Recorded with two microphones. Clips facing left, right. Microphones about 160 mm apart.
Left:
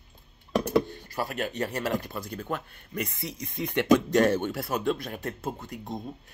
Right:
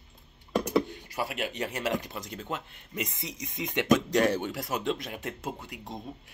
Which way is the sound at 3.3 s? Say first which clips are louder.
Left 2 dB; 55° left (ahead or behind).